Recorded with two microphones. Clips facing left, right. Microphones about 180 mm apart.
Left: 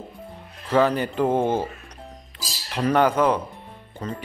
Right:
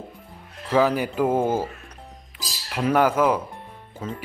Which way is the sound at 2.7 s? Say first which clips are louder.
Even; 5° right (ahead or behind).